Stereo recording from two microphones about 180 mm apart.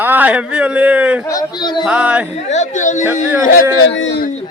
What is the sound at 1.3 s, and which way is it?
Speech, 20° left (ahead or behind).